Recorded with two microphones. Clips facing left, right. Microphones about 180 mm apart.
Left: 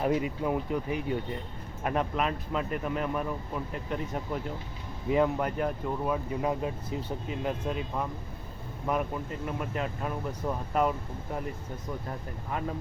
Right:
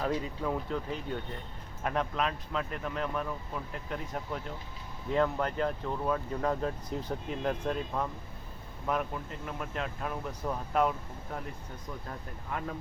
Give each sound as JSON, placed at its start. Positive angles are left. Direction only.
{"t": 0.0, "sound": "speech", "side_deg": 15}
{"t": 5.0, "sound": "speech", "side_deg": 10}